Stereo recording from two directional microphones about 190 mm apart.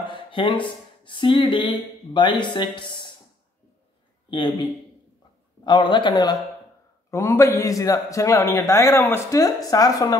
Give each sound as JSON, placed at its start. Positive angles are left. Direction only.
{"t": 0.1, "sound": "speech", "side_deg": 25}
{"t": 4.3, "sound": "a man's voice", "side_deg": 25}